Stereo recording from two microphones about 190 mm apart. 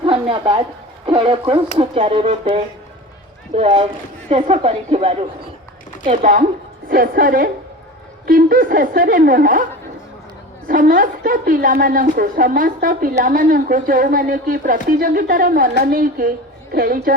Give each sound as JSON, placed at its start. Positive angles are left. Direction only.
{"t": 0.0, "sound": "a sound", "side_deg": -25}
{"t": 1.0, "sound": "a woman's voice", "side_deg": -25}
{"t": 6.1, "sound": "a woman's voice", "side_deg": -45}
{"t": 10.7, "sound": "a woman's voice", "side_deg": -45}